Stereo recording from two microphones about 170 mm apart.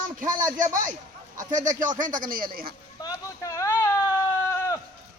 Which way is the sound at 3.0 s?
20° left (ahead or behind).